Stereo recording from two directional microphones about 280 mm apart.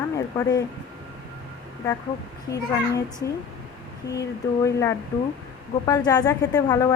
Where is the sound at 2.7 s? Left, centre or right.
Centre.